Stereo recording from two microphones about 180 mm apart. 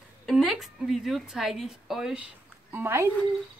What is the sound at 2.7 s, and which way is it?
Speech, 15° right (ahead or behind).